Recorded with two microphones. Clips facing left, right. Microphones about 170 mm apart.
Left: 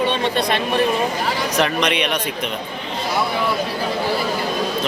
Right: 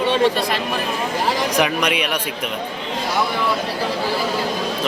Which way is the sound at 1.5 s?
10° right (ahead or behind).